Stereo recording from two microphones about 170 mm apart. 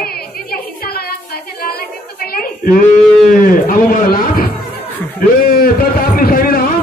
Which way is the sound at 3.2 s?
55° left (ahead or behind).